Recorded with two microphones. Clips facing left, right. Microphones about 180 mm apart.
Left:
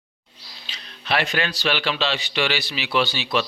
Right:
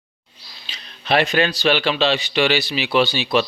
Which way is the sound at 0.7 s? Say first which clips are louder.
Right 5 dB; 20° right (ahead or behind).